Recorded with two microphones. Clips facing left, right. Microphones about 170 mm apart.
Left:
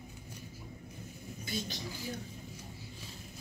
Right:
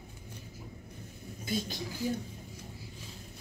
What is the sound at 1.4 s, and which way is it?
Speech, 50° right (ahead or behind).